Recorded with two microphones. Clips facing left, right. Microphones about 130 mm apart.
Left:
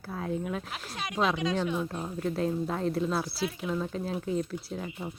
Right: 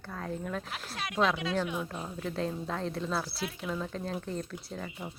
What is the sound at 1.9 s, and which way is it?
Speech, 5° left (ahead or behind).